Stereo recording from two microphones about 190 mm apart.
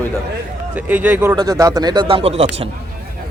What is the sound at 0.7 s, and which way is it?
Speech, 10° right (ahead or behind).